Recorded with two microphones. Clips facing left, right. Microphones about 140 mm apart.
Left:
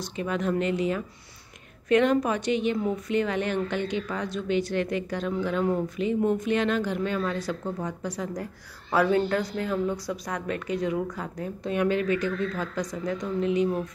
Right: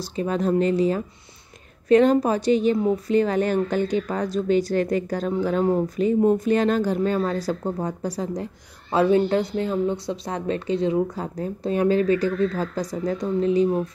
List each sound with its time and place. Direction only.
0.0 s a woman's voice: 35° right (ahead or behind)
8.9 s a woman's voice: 25° right (ahead or behind)